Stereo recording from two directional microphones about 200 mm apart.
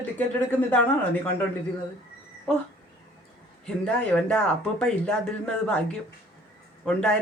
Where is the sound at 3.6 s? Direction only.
5° left (ahead or behind).